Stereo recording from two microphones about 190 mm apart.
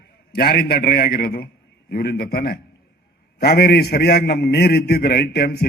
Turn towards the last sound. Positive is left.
turn(degrees=55)  # may be behind; listen again after turning